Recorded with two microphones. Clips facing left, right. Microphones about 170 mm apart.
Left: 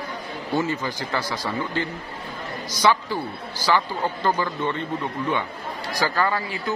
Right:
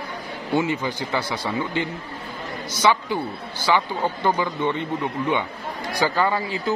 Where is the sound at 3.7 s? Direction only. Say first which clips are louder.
Right 1 dB; 15° right (ahead or behind).